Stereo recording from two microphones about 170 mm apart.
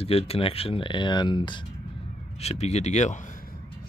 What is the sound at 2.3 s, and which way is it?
A man's voice, 40° left (ahead or behind).